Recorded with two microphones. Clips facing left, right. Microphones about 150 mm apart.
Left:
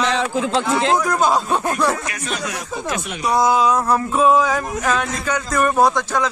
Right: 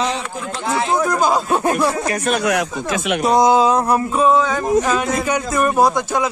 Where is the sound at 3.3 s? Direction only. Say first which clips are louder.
Right 2 dB; 25° right (ahead or behind).